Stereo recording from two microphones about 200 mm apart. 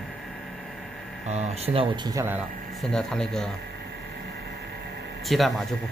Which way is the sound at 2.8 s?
5° left (ahead or behind).